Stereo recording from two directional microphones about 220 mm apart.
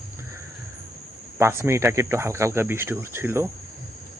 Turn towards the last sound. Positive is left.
turn(degrees=-10)  # may be behind; listen again after turning